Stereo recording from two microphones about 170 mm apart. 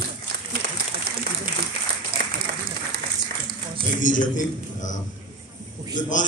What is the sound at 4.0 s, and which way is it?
Speech, 50° left (ahead or behind).